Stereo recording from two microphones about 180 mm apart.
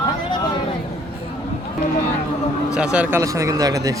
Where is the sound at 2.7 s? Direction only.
5° right (ahead or behind).